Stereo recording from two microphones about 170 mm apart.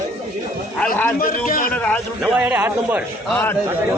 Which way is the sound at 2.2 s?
5° right (ahead or behind).